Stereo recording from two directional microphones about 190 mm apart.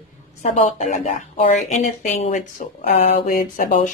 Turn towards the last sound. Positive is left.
turn(degrees=45)  # may be behind; listen again after turning